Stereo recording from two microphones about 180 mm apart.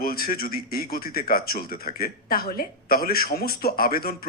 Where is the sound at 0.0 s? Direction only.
55° left (ahead or behind).